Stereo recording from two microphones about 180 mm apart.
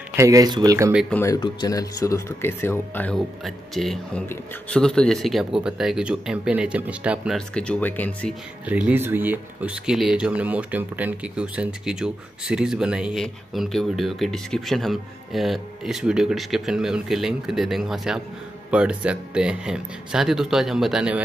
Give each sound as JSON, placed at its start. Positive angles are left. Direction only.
{"t": 0.1, "sound": "speech", "side_deg": -20}
{"t": 1.1, "sound": "speech", "side_deg": 15}
{"t": 8.6, "sound": "speech", "side_deg": -5}